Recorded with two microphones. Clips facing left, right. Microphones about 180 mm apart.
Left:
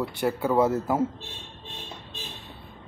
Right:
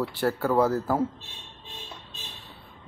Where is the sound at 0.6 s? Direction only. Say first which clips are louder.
Left 1 dB; 20° left (ahead or behind).